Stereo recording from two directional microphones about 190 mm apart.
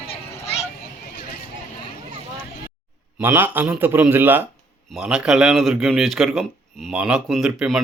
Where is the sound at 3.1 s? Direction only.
10° right (ahead or behind).